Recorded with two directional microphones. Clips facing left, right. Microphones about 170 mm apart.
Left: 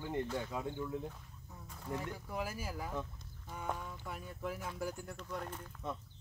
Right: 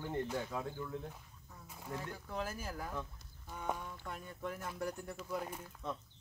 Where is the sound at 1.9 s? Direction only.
15° left (ahead or behind); by 5.7 s 5° right (ahead or behind).